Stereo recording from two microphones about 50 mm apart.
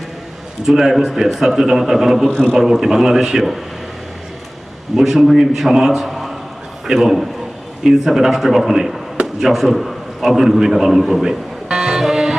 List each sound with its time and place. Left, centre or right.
0.6 s a man's voice: centre
2.3 s a man's voice: centre
2.6 s a man's voice: centre
4.9 s a man's voice: centre